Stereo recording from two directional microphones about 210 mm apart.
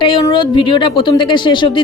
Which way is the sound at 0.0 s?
25° left (ahead or behind).